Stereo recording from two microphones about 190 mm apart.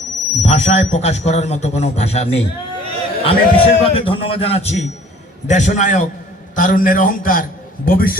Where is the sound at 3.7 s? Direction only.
30° left (ahead or behind).